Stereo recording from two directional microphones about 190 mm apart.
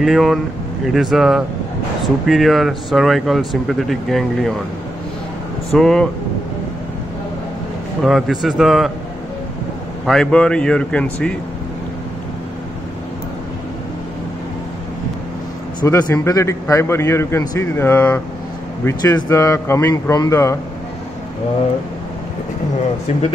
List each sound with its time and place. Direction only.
0.0 s speech: centre (ahead or behind)
5.7 s speech: 5° left (ahead or behind)
8.0 s speech: centre (ahead or behind)
10.0 s speech: 5° left (ahead or behind)
15.8 s a man's voice: 15° left (ahead or behind)